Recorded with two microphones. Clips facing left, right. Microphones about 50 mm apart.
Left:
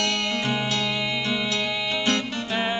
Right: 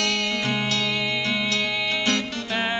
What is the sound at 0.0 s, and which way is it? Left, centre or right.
Music, centre.